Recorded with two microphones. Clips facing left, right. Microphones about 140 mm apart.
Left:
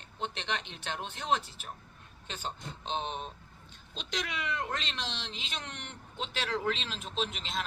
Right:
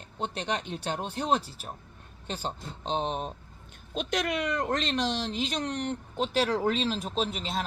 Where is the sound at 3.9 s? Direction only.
50° right (ahead or behind).